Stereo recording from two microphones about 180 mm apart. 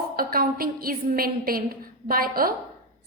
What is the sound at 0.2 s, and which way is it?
A woman's voice, 55° right (ahead or behind).